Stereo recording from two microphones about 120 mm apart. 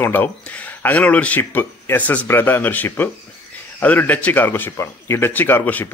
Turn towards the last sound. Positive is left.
turn(degrees=15)  # may be behind; listen again after turning